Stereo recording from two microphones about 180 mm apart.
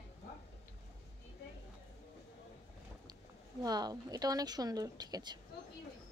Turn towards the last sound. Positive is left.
turn(degrees=-25)  # may be behind; listen again after turning